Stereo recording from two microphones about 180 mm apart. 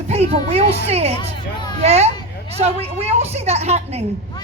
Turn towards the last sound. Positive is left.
turn(degrees=-35)  # may be behind; listen again after turning